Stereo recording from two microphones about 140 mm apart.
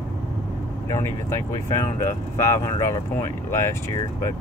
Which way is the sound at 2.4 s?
25° left (ahead or behind).